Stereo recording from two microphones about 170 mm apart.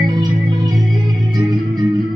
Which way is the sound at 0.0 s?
25° right (ahead or behind).